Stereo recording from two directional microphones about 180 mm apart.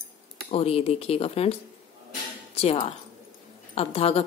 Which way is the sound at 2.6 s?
35° left (ahead or behind).